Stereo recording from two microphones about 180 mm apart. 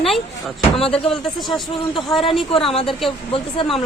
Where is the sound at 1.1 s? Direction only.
Centre (ahead or behind).